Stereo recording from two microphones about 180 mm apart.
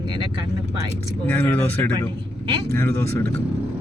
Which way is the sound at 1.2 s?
10° left (ahead or behind).